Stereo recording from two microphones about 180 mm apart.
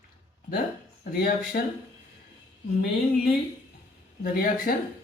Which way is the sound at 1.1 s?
55° left (ahead or behind).